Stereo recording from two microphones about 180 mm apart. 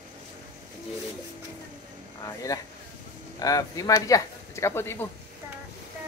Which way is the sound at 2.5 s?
20° left (ahead or behind).